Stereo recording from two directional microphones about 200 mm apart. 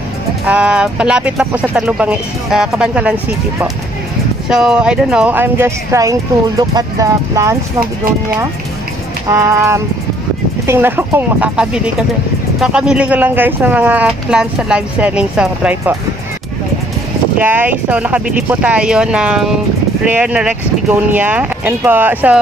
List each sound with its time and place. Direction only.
0.5 s speech: 5° right (ahead or behind)
9.3 s speech: 15° right (ahead or behind)
17.4 s speech: 10° right (ahead or behind)